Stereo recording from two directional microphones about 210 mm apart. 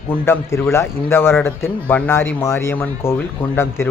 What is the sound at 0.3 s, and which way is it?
A man's voice, 10° left (ahead or behind).